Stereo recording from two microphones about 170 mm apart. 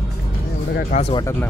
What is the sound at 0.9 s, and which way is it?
Speech, 45° left (ahead or behind).